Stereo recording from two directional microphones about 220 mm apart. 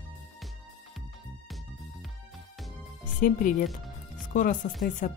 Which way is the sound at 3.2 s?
40° left (ahead or behind).